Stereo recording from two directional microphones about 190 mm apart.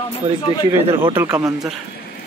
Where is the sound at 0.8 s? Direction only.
25° right (ahead or behind).